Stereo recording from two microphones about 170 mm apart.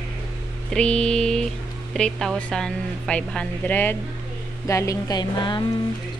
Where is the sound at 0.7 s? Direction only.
5° left (ahead or behind).